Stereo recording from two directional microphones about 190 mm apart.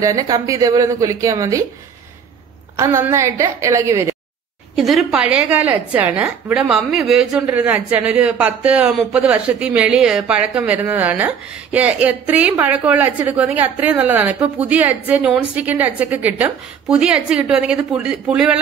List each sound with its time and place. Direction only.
0.0 s a woman's voice: 20° right (ahead or behind)
2.7 s a woman's voice: 15° right (ahead or behind)
4.7 s a woman's voice: centre (ahead or behind)